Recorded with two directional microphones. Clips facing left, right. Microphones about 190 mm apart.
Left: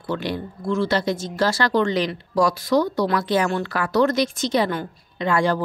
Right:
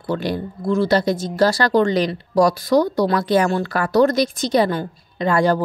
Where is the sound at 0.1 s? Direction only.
40° right (ahead or behind).